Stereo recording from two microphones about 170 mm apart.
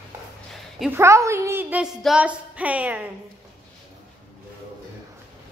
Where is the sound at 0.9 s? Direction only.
15° right (ahead or behind).